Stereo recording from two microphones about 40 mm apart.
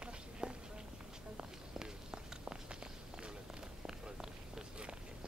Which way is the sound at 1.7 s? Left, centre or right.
Centre.